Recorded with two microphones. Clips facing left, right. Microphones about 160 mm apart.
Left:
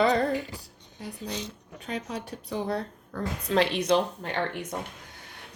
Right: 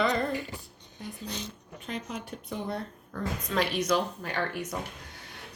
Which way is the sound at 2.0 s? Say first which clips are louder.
Left 2 dB; 35° left (ahead or behind).